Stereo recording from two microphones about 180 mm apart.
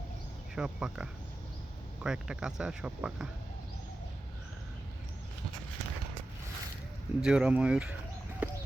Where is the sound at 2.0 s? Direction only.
5° right (ahead or behind).